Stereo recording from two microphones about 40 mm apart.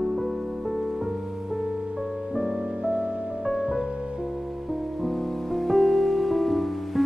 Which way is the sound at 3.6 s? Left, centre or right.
Right.